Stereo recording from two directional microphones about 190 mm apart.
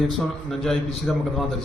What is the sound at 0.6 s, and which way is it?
Speech, centre (ahead or behind).